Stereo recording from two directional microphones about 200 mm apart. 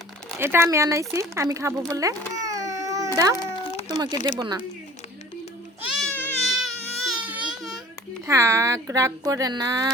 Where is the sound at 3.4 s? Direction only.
25° left (ahead or behind).